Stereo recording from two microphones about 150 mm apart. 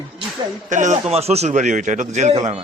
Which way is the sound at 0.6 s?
55° right (ahead or behind).